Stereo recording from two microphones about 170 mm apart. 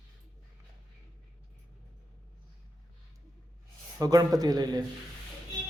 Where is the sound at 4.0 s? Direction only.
20° right (ahead or behind).